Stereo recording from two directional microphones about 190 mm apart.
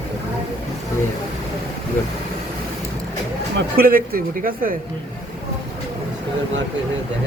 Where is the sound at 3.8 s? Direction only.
50° right (ahead or behind).